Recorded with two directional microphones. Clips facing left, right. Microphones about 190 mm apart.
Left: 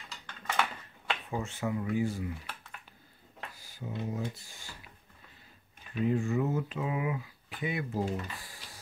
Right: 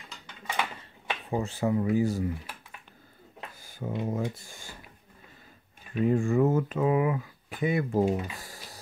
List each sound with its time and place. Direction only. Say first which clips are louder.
0.5 s a sound: even; 15° right (ahead or behind)
1.3 s speech: right 8 dB; 35° right (ahead or behind)
3.6 s speech: right 6 dB; 50° right (ahead or behind)
6.0 s speech: right 6 dB; 50° right (ahead or behind)